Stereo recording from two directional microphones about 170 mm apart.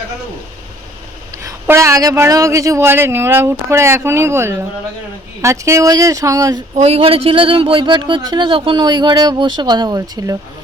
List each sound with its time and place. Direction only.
1.4 s speech: 15° right (ahead or behind)
6.8 s speech: 35° right (ahead or behind)